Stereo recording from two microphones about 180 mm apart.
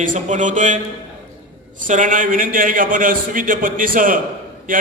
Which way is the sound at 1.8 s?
45° right (ahead or behind).